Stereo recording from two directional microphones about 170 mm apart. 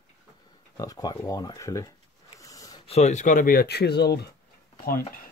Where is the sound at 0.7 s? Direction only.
20° left (ahead or behind).